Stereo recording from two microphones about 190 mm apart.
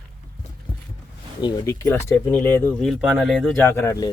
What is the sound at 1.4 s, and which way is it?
Speech, 20° left (ahead or behind).